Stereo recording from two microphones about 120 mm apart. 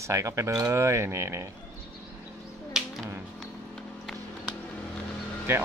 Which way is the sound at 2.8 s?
5° right (ahead or behind).